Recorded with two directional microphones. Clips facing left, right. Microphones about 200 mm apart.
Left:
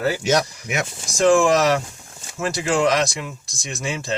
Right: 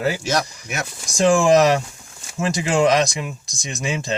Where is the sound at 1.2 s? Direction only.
15° right (ahead or behind).